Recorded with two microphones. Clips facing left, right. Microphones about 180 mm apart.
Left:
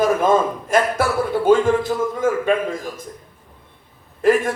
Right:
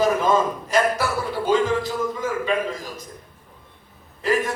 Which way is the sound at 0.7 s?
50° left (ahead or behind).